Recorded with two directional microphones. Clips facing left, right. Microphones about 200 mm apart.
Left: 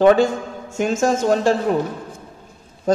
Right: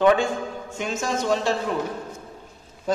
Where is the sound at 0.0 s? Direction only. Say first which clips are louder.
Left 5 dB; 40° left (ahead or behind).